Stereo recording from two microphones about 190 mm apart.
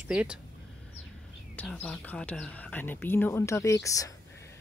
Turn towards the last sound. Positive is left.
turn(degrees=15)  # may be behind; listen again after turning